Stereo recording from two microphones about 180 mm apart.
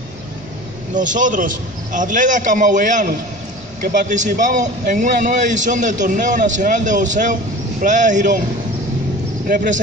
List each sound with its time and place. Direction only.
0.9 s a man's voice: 45° right (ahead or behind)
9.5 s a man's voice: 50° right (ahead or behind)